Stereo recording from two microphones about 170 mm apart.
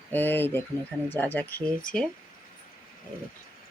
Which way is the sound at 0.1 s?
10° left (ahead or behind).